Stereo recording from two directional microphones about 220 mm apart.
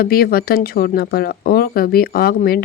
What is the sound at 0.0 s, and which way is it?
A woman's voice, 45° left (ahead or behind).